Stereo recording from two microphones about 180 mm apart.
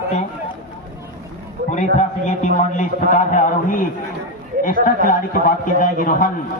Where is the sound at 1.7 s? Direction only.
40° left (ahead or behind).